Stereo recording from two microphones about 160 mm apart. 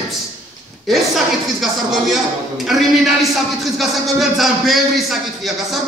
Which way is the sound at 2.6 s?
Centre (ahead or behind).